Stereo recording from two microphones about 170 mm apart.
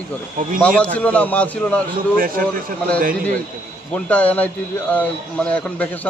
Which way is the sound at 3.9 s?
10° left (ahead or behind).